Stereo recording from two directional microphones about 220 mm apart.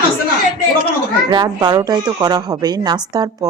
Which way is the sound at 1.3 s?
20° right (ahead or behind).